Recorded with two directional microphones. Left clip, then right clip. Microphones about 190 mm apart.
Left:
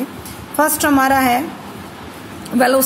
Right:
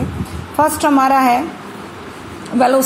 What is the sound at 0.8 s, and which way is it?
Speech, 20° left (ahead or behind).